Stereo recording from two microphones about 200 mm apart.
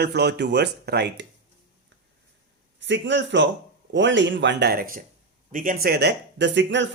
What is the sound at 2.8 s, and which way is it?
Speech, 60° right (ahead or behind).